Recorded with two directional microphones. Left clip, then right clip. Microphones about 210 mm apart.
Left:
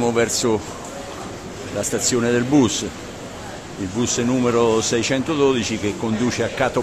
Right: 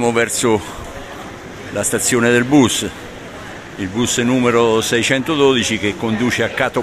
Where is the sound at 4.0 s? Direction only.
15° right (ahead or behind).